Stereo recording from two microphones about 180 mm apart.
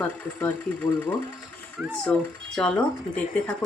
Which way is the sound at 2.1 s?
5° left (ahead or behind).